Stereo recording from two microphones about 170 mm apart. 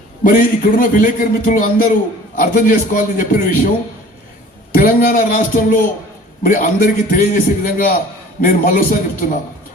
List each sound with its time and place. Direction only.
0.3 s a man's voice: 55° left (ahead or behind)
4.7 s a man's voice: 60° left (ahead or behind)